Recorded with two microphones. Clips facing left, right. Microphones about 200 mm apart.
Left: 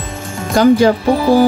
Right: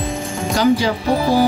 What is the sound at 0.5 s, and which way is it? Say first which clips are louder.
Speech: left 6 dB; 55° left (ahead or behind).